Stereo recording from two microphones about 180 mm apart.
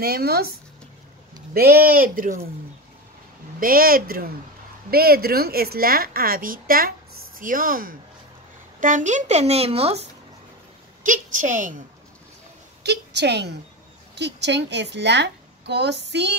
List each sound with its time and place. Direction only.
0.0 s a woman's voice: 60° right (ahead or behind)
1.5 s speech: 55° right (ahead or behind)
3.5 s a woman's voice: 55° right (ahead or behind); by 10.0 s 35° right (ahead or behind)
11.1 s speech: 45° right (ahead or behind)
12.8 s a woman's voice: 70° right (ahead or behind)